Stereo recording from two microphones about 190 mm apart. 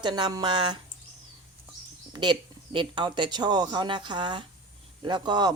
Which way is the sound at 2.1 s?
25° right (ahead or behind).